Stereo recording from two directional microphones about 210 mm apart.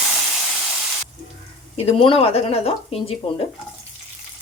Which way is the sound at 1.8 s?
25° left (ahead or behind).